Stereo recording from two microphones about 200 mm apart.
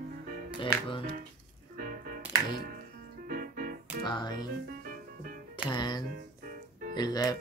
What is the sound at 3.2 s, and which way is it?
Music, 45° right (ahead or behind).